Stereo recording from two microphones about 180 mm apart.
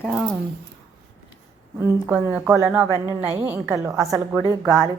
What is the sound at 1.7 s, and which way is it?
A woman's voice, 10° right (ahead or behind).